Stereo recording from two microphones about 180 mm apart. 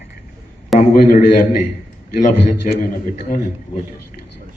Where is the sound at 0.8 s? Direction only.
45° left (ahead or behind).